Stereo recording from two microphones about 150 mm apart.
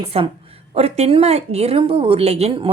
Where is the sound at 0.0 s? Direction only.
40° right (ahead or behind).